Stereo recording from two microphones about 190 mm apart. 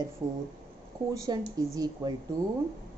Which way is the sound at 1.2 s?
20° right (ahead or behind).